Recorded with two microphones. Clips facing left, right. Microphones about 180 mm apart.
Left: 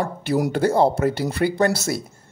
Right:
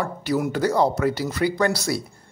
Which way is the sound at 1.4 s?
40° left (ahead or behind).